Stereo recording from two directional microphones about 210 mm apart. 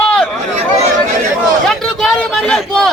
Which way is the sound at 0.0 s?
5° left (ahead or behind).